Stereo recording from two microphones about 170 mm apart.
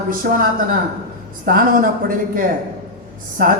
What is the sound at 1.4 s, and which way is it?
Speech, 55° right (ahead or behind).